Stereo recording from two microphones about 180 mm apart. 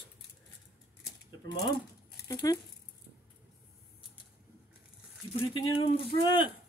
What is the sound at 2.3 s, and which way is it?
Speech, 20° left (ahead or behind).